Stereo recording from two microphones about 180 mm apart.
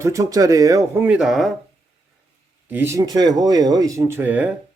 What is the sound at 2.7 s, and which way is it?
Speech, 15° right (ahead or behind).